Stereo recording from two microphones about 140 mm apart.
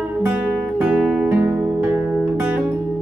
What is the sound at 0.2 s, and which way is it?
Music, 10° right (ahead or behind).